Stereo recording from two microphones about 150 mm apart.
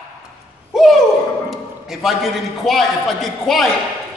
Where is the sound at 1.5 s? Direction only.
Centre (ahead or behind).